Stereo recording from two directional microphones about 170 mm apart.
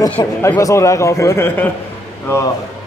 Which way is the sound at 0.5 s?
15° left (ahead or behind).